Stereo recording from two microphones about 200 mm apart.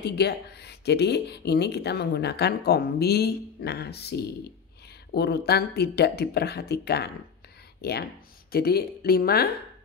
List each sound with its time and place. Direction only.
0.0 s speech: 55° left (ahead or behind)